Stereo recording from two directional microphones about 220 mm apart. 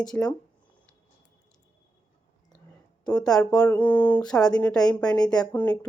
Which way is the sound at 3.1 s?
5° left (ahead or behind).